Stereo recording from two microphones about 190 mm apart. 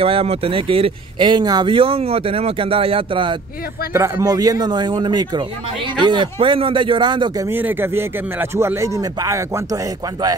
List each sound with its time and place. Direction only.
0.0 s speech: 30° right (ahead or behind)
3.9 s speech: 15° right (ahead or behind)
7.5 s speech: 10° right (ahead or behind)